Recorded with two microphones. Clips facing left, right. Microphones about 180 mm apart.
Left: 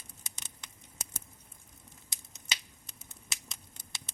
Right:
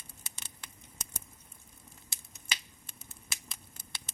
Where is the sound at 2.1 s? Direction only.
20° left (ahead or behind).